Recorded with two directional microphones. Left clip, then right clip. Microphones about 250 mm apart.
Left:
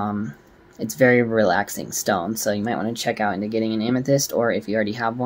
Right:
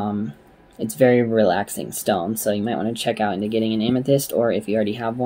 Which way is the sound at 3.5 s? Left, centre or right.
Centre.